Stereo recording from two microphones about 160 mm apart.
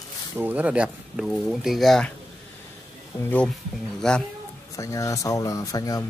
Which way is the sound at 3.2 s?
10° left (ahead or behind).